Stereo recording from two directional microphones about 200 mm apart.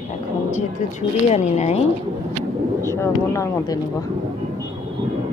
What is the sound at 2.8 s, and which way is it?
Speech, 15° left (ahead or behind).